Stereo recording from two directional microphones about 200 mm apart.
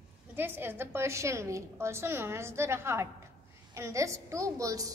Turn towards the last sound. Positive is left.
turn(degrees=-15)  # may be behind; listen again after turning